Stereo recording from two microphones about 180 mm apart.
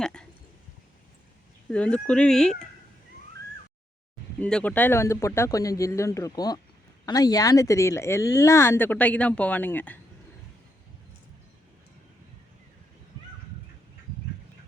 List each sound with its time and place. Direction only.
0.0 s a sound: 5° left (ahead or behind)
1.7 s speech: 5° left (ahead or behind)
4.4 s speech: 5° left (ahead or behind)